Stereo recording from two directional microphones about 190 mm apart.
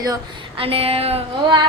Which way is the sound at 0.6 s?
30° right (ahead or behind).